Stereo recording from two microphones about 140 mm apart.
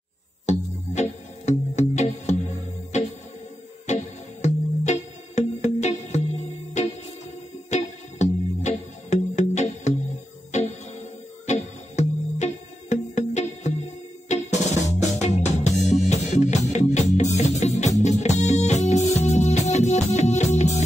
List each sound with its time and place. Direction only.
0.5 s music: 55° left (ahead or behind)
14.3 s drum: 55° left (ahead or behind)
14.9 s music: 55° left (ahead or behind)